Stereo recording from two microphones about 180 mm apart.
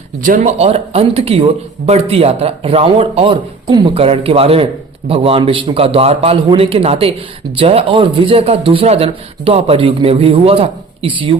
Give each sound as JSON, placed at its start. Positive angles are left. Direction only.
{"t": 0.2, "sound": "speech", "side_deg": -45}